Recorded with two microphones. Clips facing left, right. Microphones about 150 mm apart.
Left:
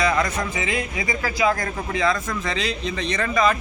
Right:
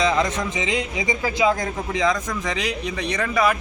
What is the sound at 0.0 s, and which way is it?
A man's voice, 20° right (ahead or behind).